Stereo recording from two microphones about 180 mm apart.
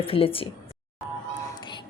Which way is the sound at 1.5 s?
25° left (ahead or behind).